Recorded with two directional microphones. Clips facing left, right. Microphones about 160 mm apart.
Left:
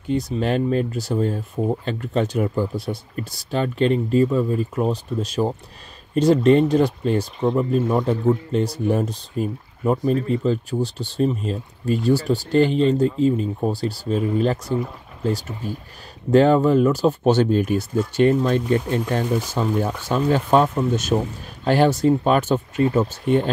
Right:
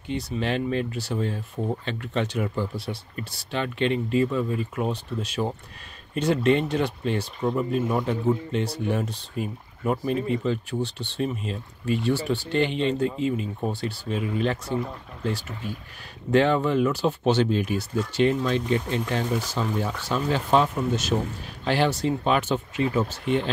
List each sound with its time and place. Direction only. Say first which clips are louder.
0.1 s speech: left 6 dB; 45° left (ahead or behind)